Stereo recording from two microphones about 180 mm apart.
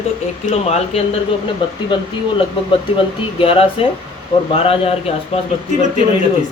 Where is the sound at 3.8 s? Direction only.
30° left (ahead or behind).